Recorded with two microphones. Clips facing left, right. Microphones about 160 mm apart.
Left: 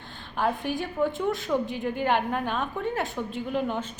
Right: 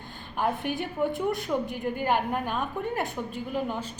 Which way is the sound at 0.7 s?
60° right (ahead or behind).